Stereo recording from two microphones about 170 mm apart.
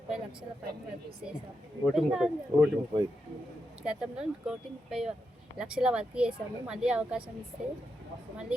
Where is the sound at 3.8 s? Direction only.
5° right (ahead or behind).